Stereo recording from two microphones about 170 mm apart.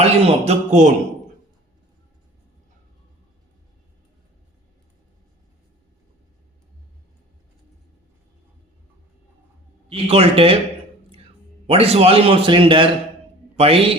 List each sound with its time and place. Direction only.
0.0 s speech: 40° right (ahead or behind)
9.9 s a man's voice: 35° right (ahead or behind)
11.6 s a man's voice: 35° right (ahead or behind)